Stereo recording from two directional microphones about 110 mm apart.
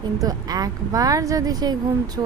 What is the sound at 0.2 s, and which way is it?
Speech, 35° right (ahead or behind).